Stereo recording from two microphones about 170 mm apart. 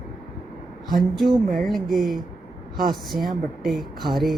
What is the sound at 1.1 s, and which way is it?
Speech, centre (ahead or behind).